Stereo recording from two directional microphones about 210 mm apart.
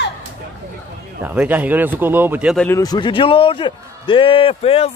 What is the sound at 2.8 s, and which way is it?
A man's voice, 20° left (ahead or behind).